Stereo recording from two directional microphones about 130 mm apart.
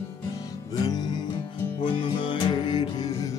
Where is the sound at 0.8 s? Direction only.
35° left (ahead or behind).